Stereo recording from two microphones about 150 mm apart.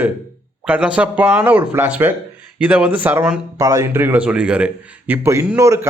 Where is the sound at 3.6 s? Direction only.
20° right (ahead or behind).